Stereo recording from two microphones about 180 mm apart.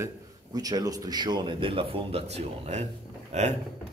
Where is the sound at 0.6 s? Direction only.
20° right (ahead or behind); by 3.5 s 40° right (ahead or behind).